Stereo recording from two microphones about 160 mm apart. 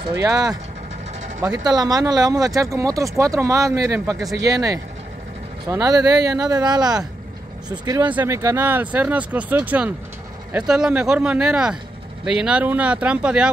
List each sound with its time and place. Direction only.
0.1 s speech: 20° right (ahead or behind)
8.1 s speech: 15° right (ahead or behind)